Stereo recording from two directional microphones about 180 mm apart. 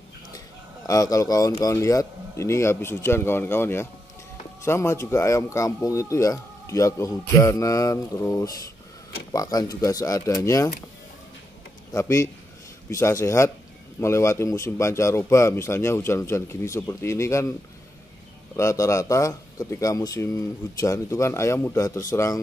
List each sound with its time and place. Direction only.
0.8 s speech: 20° left (ahead or behind)
11.9 s speech: 15° left (ahead or behind)
18.6 s speech: 15° left (ahead or behind)